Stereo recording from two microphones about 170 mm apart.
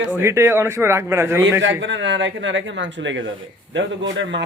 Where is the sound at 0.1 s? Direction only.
15° right (ahead or behind).